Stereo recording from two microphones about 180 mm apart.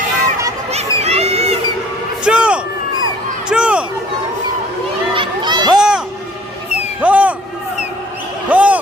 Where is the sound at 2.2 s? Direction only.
5° right (ahead or behind).